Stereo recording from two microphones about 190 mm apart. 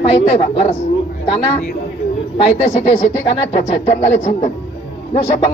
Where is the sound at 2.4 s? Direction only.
35° left (ahead or behind).